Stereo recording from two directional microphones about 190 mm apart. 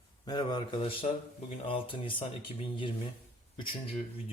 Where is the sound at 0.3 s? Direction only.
20° left (ahead or behind).